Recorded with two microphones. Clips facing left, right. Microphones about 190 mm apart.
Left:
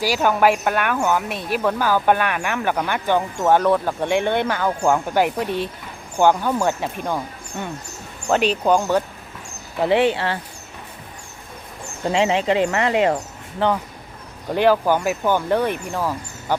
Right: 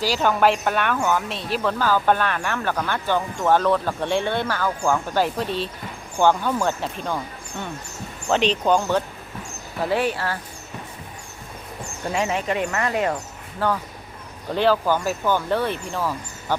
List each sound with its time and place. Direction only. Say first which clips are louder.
0.0 s speech: left 2 dB; 10° left (ahead or behind)
8.3 s speech: left 2 dB; 10° left (ahead or behind)
9.8 s speech: left 5 dB; 25° left (ahead or behind)
12.2 s speech: left 6 dB; 90° left
12.5 s speech: left 5 dB; 25° left (ahead or behind)